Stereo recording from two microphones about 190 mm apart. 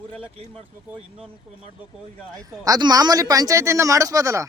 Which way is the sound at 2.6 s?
20° right (ahead or behind).